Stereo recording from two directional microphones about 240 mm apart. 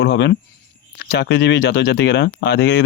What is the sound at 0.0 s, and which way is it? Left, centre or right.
Speech, left.